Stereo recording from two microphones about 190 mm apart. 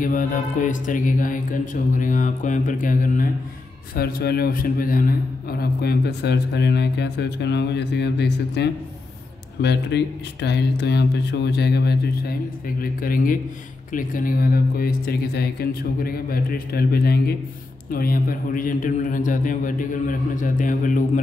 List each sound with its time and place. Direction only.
0.0 s a man's voice: 45° left (ahead or behind)